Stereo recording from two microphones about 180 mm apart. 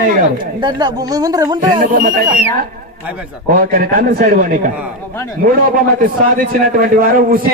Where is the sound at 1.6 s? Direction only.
50° right (ahead or behind).